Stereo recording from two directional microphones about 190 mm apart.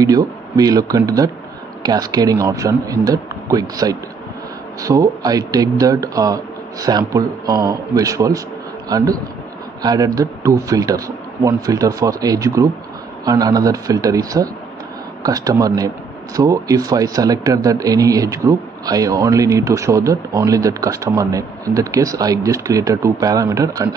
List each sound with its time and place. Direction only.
0.0 s a man's voice: 20° right (ahead or behind)